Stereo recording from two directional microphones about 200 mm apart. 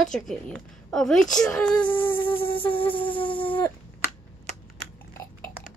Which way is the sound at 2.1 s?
25° left (ahead or behind).